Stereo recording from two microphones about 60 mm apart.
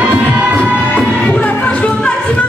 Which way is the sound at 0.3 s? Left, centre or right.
Centre.